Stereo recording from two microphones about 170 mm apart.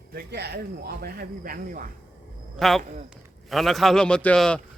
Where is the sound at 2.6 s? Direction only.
Centre (ahead or behind).